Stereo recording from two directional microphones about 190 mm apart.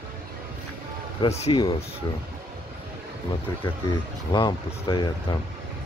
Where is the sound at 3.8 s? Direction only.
25° left (ahead or behind).